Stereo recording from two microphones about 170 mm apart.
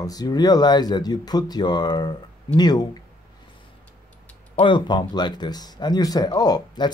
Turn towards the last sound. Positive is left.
turn(degrees=25)  # may be behind; listen again after turning